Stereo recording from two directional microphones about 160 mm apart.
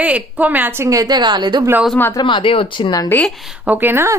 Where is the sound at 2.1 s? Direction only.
30° left (ahead or behind).